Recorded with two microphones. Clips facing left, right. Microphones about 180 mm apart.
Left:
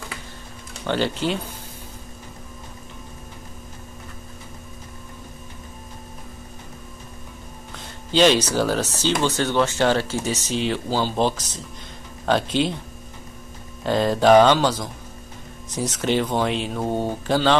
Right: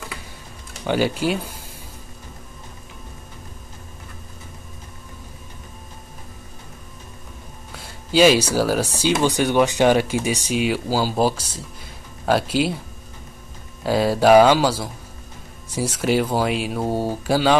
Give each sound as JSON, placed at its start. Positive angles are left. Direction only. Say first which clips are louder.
{"t": 0.8, "sound": "speech", "louder": "right 2 dB", "side_deg": -10}
{"t": 7.7, "sound": "speech", "louder": "right 3 dB", "side_deg": -10}
{"t": 13.8, "sound": "speech", "louder": "right 1 dB", "side_deg": -5}